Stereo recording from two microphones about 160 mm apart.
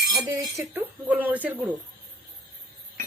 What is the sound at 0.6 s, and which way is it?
A woman's voice, 10° right (ahead or behind).